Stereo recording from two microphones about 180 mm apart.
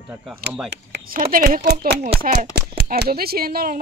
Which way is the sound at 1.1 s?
45° right (ahead or behind).